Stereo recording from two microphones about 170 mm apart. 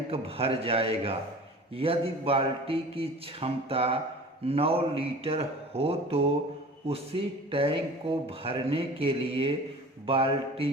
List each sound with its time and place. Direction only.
0.1 s speech: 35° right (ahead or behind)